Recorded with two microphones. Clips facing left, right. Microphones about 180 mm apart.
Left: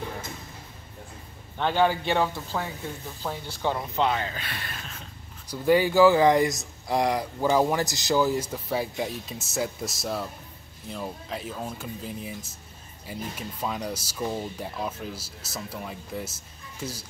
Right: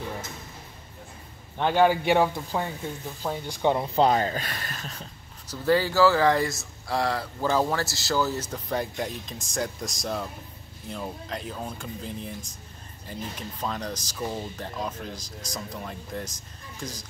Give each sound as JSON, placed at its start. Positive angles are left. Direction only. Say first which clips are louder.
{"t": 1.6, "sound": "speech", "louder": "right 2 dB", "side_deg": -10}
{"t": 3.9, "sound": "speech", "louder": "right 4 dB", "side_deg": -40}
{"t": 5.5, "sound": "speech", "louder": "left 2 dB", "side_deg": 15}